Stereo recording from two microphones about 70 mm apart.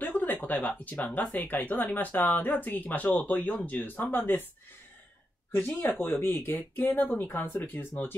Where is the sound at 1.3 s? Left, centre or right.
Left.